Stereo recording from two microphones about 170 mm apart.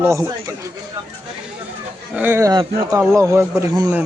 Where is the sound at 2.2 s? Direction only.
15° right (ahead or behind).